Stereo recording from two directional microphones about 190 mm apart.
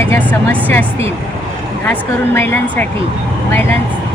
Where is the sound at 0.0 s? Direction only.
15° left (ahead or behind).